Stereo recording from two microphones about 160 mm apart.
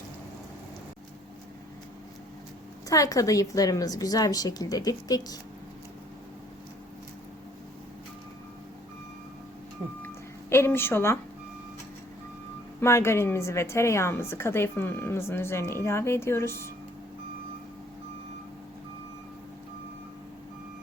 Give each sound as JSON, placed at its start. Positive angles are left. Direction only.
{"t": 2.9, "sound": "a woman's voice", "side_deg": 20}
{"t": 10.5, "sound": "a woman's voice", "side_deg": 15}
{"t": 12.8, "sound": "a woman's voice", "side_deg": 15}